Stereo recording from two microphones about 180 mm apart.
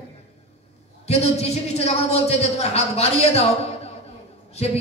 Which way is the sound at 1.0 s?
35° left (ahead or behind).